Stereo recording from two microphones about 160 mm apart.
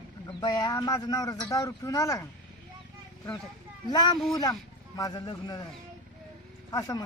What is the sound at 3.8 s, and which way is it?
A man's voice, 25° left (ahead or behind).